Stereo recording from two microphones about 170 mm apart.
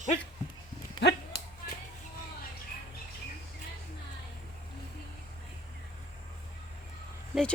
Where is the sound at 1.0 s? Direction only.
90° left.